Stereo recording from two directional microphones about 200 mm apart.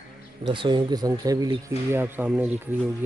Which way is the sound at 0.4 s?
25° right (ahead or behind).